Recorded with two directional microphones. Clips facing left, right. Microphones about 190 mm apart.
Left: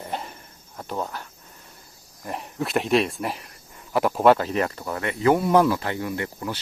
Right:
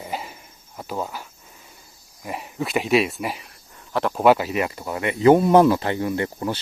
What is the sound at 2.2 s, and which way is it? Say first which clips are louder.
Speech: right 1 dB; 5° right (ahead or behind).